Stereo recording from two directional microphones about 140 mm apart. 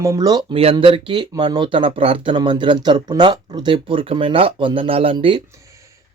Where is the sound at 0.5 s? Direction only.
40° right (ahead or behind).